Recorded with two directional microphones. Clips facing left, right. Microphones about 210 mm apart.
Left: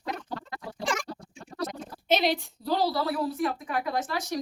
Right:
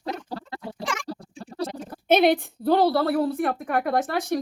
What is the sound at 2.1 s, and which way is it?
A woman's voice, 55° right (ahead or behind).